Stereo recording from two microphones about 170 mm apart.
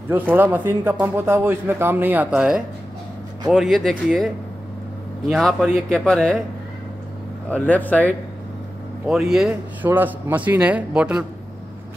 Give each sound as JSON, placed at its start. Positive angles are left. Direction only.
{"t": 0.1, "sound": "a man's voice", "side_deg": -10}
{"t": 5.3, "sound": "speech", "side_deg": 0}
{"t": 7.4, "sound": "speech", "side_deg": 10}
{"t": 9.0, "sound": "a man's voice", "side_deg": 0}